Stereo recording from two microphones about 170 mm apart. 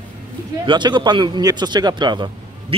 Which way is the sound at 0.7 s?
25° right (ahead or behind).